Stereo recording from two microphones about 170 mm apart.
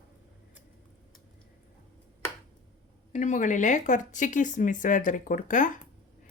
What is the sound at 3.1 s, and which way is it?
Speech, 45° left (ahead or behind).